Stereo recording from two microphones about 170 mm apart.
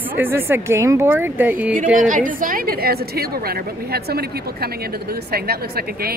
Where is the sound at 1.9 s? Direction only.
50° right (ahead or behind); by 6.1 s 65° right (ahead or behind).